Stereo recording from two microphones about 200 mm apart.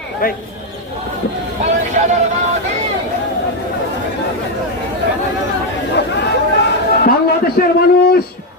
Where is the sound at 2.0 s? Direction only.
40° right (ahead or behind).